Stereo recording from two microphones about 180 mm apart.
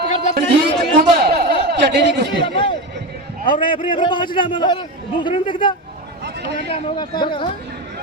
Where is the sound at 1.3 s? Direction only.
65° right (ahead or behind).